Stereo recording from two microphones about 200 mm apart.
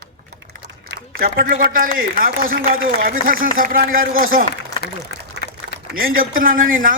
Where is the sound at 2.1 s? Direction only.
45° right (ahead or behind).